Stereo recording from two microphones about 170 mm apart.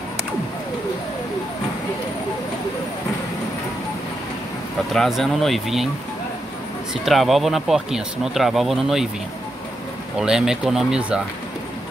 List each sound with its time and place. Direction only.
4.9 s speech: centre (ahead or behind)
6.9 s speech: centre (ahead or behind)
10.1 s speech: 5° right (ahead or behind)